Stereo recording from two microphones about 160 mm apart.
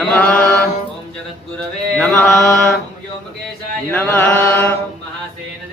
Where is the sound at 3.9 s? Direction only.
10° left (ahead or behind).